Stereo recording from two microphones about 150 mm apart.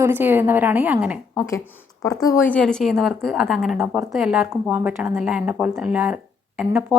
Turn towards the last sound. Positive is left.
turn(degrees=-5)  # may be behind; listen again after turning